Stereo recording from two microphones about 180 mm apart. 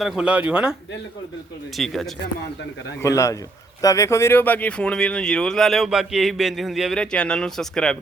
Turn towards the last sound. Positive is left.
turn(degrees=5)  # may be behind; listen again after turning